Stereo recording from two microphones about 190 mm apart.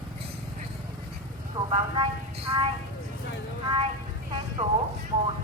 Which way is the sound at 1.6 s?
25° right (ahead or behind).